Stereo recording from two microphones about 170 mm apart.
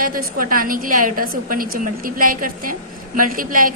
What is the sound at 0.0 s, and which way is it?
A woman's voice, 55° right (ahead or behind).